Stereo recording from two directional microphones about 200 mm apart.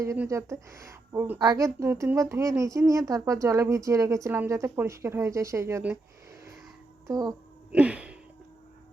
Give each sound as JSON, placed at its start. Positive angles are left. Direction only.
{"t": 0.0, "sound": "a woman's voice", "side_deg": -15}
{"t": 7.1, "sound": "a child's voice", "side_deg": -20}
{"t": 7.7, "sound": "a sound", "side_deg": -5}